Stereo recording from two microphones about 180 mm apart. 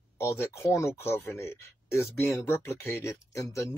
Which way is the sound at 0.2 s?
15° left (ahead or behind).